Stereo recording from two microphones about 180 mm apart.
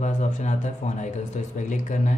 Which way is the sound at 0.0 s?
40° left (ahead or behind).